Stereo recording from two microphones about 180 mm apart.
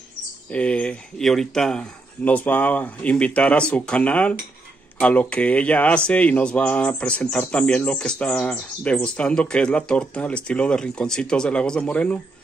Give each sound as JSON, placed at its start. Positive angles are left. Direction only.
{"t": 0.5, "sound": "speech", "side_deg": 5}